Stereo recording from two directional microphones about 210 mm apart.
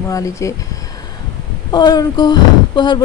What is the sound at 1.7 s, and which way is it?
Speech, 20° left (ahead or behind).